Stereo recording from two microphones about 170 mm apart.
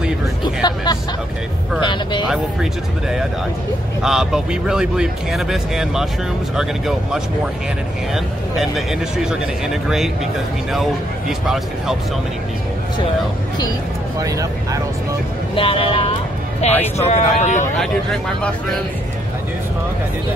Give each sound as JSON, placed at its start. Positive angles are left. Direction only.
{"t": 0.6, "sound": "hubbub", "side_deg": 25}
{"t": 1.8, "sound": "speech", "side_deg": 25}
{"t": 2.2, "sound": "speech", "side_deg": -5}
{"t": 14.2, "sound": "speech", "side_deg": -20}
{"t": 15.5, "sound": "speech", "side_deg": 30}
{"t": 17.7, "sound": "speech", "side_deg": 5}